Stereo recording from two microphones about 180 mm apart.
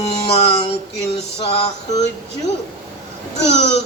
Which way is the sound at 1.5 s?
35° left (ahead or behind).